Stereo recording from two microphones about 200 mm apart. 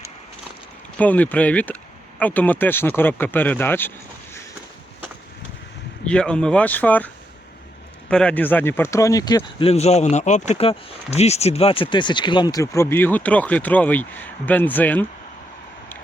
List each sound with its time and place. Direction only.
0.9 s speech: 10° left (ahead or behind)
6.1 s speech: 5° left (ahead or behind)